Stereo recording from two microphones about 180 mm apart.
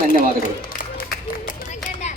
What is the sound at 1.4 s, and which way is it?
Music, 45° left (ahead or behind).